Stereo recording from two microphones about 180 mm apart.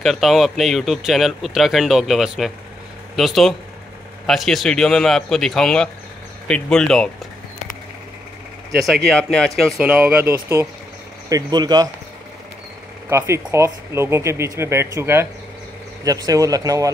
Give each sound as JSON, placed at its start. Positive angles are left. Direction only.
{"t": 0.0, "sound": "speech", "side_deg": 0}
{"t": 8.7, "sound": "speech", "side_deg": 0}
{"t": 13.1, "sound": "speech", "side_deg": -15}